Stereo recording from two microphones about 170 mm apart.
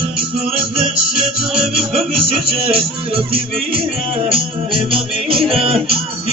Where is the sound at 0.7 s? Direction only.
5° right (ahead or behind).